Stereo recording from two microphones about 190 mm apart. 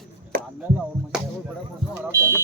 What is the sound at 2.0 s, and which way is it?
Smoke detector, 15° right (ahead or behind).